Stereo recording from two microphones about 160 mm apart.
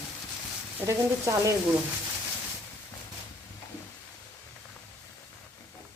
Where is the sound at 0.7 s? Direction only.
20° right (ahead or behind).